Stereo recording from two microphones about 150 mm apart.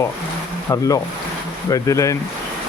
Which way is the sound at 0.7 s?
20° left (ahead or behind).